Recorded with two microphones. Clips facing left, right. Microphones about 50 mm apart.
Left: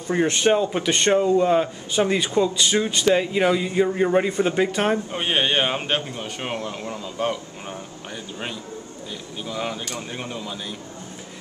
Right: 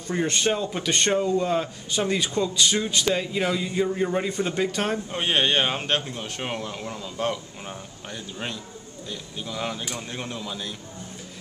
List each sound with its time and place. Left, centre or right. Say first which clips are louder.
0.1 s a man's voice: left 5 dB; centre
9.4 s a man's voice: left 2 dB; centre